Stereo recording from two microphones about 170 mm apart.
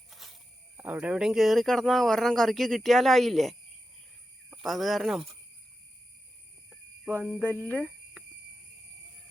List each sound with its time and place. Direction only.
0.1 s cricket: centre (ahead or behind)
0.8 s speech: 10° right (ahead or behind)
4.6 s speech: centre (ahead or behind)
7.1 s a sound: 15° right (ahead or behind)
7.7 s speech: 5° left (ahead or behind)